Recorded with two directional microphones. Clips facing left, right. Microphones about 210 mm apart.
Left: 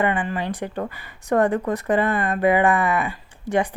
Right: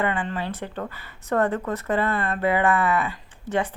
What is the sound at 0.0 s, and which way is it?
Speech, 15° left (ahead or behind).